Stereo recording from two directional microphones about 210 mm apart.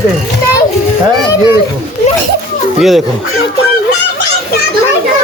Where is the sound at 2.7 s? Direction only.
Centre (ahead or behind).